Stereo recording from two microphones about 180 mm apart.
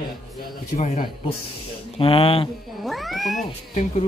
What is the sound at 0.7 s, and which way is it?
Speech, 45° left (ahead or behind).